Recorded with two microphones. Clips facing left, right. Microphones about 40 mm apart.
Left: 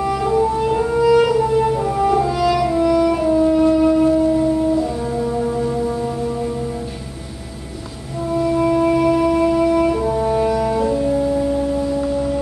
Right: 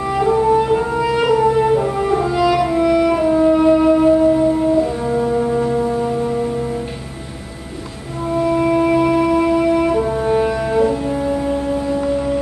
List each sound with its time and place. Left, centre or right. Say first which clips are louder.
0.1 s music: right 6 dB; centre
8.3 s music: right 1 dB; centre